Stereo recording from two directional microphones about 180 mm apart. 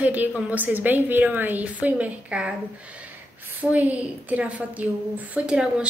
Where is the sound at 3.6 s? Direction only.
10° right (ahead or behind).